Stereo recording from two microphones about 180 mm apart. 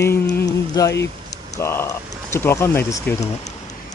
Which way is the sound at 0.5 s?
20° left (ahead or behind).